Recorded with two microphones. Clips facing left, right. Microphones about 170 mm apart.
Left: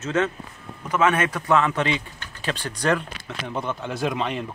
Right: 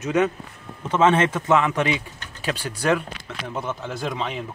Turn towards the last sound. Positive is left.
turn(degrees=0)  # may be behind; listen again after turning